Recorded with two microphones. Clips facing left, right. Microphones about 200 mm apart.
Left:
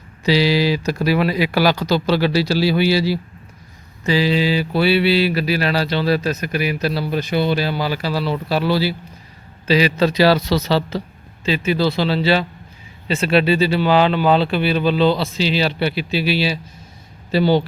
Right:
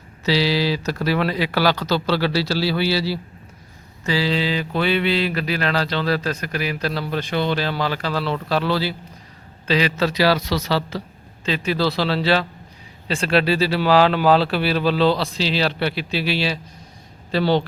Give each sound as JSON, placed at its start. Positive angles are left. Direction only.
{"t": 0.3, "sound": "a man's voice", "side_deg": 15}
{"t": 10.0, "sound": "speech", "side_deg": 25}
{"t": 11.4, "sound": "speech", "side_deg": 5}